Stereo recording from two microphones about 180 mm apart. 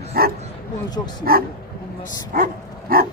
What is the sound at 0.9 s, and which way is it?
Speech, 25° left (ahead or behind).